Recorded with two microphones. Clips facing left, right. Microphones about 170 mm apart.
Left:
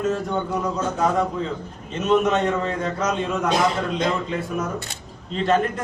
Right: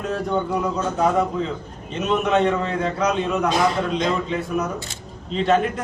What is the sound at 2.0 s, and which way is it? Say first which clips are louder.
A man's voice: even; centre (ahead or behind).